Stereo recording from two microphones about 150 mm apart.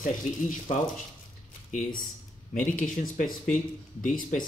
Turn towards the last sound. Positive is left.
turn(degrees=60)  # may be behind; listen again after turning